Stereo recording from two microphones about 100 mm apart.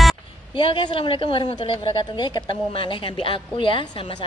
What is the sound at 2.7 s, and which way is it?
A woman's voice, 60° left (ahead or behind).